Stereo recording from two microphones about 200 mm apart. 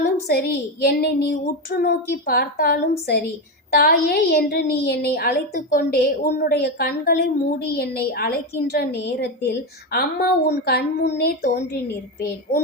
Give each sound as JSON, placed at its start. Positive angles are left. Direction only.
{"t": 0.0, "sound": "a woman's voice", "side_deg": 55}